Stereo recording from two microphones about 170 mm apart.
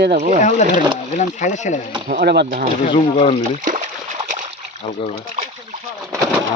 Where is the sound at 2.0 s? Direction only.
65° right (ahead or behind).